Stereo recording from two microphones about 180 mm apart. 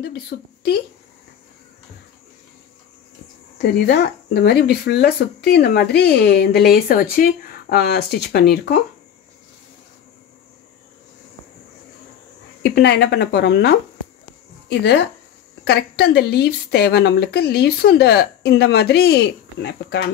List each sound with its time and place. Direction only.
0.0 s speech: 60° left (ahead or behind)
3.8 s speech: 70° left (ahead or behind)
12.6 s a woman's voice: 70° left (ahead or behind)